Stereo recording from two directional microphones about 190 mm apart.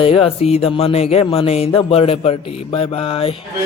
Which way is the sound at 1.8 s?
30° left (ahead or behind).